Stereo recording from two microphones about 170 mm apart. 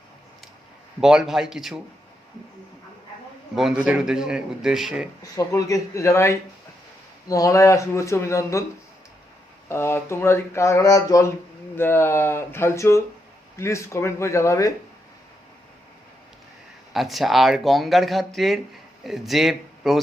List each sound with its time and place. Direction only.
1.0 s speech: centre (ahead or behind)
3.5 s speech: centre (ahead or behind)
5.2 s speech: 20° left (ahead or behind)
9.6 s speech: 15° left (ahead or behind)
16.9 s speech: centre (ahead or behind)